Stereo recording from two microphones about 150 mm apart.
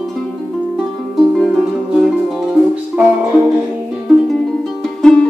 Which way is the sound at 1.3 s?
Centre (ahead or behind).